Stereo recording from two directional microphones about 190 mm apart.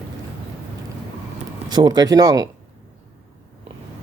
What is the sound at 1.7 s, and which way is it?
Speech, 20° right (ahead or behind).